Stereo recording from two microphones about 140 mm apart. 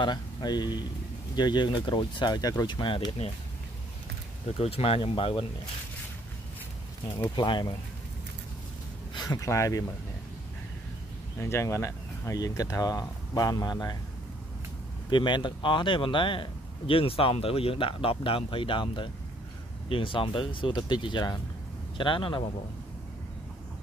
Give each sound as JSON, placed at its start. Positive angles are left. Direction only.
{"t": 0.0, "sound": "speech", "side_deg": 30}
{"t": 4.5, "sound": "speech", "side_deg": 45}
{"t": 7.3, "sound": "speech", "side_deg": 30}
{"t": 9.1, "sound": "speech", "side_deg": 25}
{"t": 11.3, "sound": "speech", "side_deg": 20}
{"t": 15.0, "sound": "speech", "side_deg": 35}